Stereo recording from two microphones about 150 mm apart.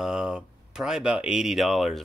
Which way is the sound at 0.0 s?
5° right (ahead or behind).